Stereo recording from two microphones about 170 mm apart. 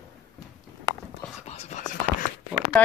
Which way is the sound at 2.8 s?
10° left (ahead or behind).